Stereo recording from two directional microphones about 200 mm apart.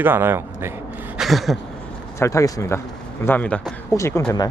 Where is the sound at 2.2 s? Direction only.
15° left (ahead or behind).